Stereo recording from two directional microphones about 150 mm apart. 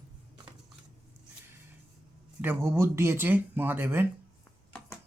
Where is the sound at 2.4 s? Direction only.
15° right (ahead or behind).